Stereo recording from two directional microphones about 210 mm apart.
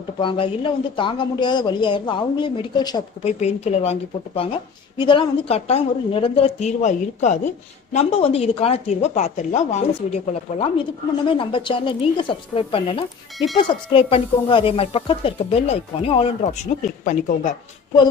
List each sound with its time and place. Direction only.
0.2 s a woman's voice: 25° left (ahead or behind)
3.3 s a woman's voice: 30° left (ahead or behind)